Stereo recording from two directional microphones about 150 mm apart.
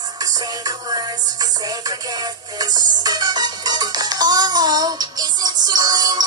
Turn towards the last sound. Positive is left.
turn(degrees=-25)  # may be behind; listen again after turning